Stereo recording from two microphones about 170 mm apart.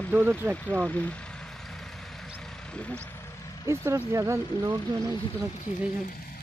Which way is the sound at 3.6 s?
15° right (ahead or behind).